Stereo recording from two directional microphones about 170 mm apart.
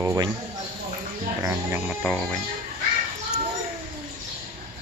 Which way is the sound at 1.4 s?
15° right (ahead or behind).